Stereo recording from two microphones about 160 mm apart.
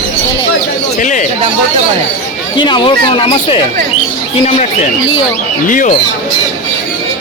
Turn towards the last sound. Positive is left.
turn(degrees=55)  # may be behind; listen again after turning